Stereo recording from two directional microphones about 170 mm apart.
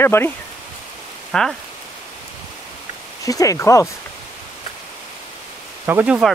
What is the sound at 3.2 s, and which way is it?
Speech, 20° left (ahead or behind).